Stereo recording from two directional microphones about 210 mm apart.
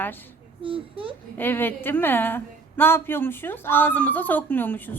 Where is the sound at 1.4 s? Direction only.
10° left (ahead or behind).